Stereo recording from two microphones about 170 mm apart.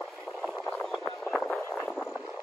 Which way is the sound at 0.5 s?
5° left (ahead or behind).